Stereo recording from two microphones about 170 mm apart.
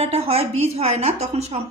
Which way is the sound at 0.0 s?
35° right (ahead or behind).